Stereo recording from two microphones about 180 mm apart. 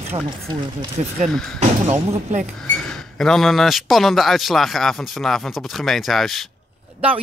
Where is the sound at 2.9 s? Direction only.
5° left (ahead or behind).